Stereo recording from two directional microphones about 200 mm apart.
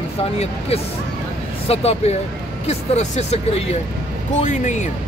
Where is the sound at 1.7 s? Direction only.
30° left (ahead or behind).